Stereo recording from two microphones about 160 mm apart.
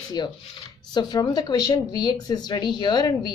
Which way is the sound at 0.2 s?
30° left (ahead or behind).